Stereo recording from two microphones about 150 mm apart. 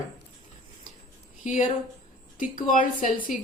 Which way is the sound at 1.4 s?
55° left (ahead or behind).